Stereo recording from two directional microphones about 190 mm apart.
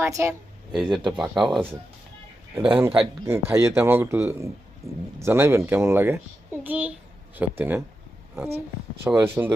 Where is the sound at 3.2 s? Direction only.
15° right (ahead or behind).